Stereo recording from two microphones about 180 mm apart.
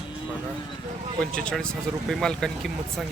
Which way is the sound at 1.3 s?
5° left (ahead or behind).